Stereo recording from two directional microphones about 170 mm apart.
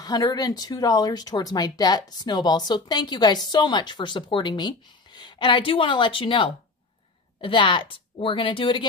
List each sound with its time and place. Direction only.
0.0 s speech: 20° left (ahead or behind)